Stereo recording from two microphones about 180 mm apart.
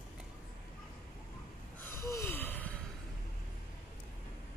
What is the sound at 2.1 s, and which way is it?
Gasp, 15° left (ahead or behind).